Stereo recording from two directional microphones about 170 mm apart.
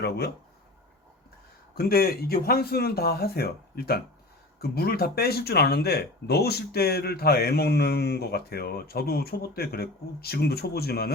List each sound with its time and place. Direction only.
1.7 s speech: 60° left (ahead or behind)